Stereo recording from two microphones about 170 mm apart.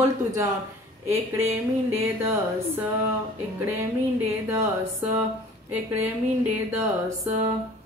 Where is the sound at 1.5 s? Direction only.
15° right (ahead or behind).